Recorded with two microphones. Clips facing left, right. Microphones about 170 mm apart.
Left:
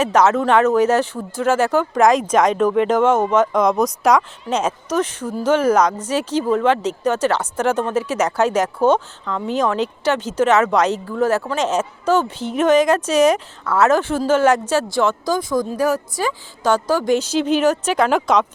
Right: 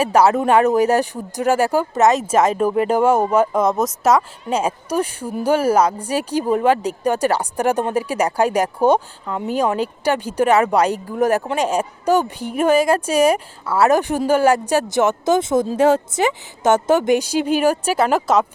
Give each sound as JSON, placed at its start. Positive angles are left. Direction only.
{"t": 0.0, "sound": "speech", "side_deg": -10}